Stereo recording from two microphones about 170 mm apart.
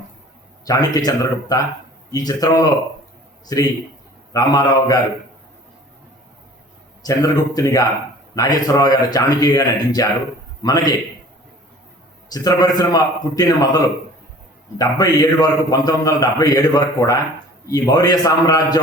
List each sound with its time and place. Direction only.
0.6 s a man's voice: 20° left (ahead or behind)
7.0 s a man's voice: 20° left (ahead or behind)
12.3 s a man's voice: 25° left (ahead or behind)